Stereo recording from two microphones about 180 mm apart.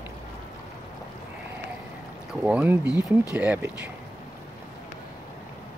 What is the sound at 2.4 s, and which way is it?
Speech, 10° right (ahead or behind).